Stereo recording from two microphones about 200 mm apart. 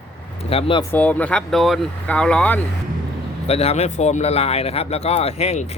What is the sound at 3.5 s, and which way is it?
Speech, 30° left (ahead or behind).